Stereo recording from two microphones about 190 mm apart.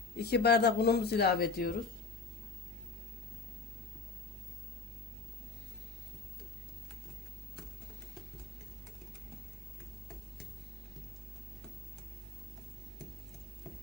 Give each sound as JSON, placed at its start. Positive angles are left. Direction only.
{"t": 0.2, "sound": "speech", "side_deg": 60}